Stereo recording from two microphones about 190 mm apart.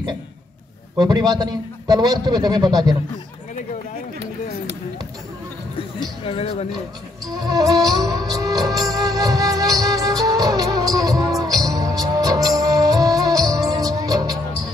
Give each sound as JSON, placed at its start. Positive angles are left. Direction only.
{"t": 0.9, "sound": "a man's voice", "side_deg": -20}
{"t": 5.8, "sound": "a sound", "side_deg": 30}
{"t": 7.5, "sound": "music", "side_deg": -20}